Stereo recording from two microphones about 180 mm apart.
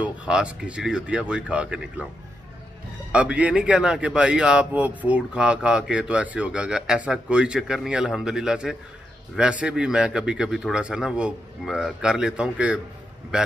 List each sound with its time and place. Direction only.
0.0 s speech: 5° right (ahead or behind)
3.1 s a man's voice: 5° right (ahead or behind)